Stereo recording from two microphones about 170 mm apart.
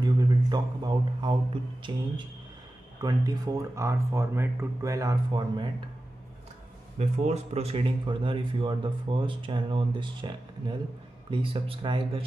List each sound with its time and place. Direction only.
0.0 s a sound: 25° right (ahead or behind)
1.9 s speech: 30° right (ahead or behind)
7.0 s speech: 40° right (ahead or behind)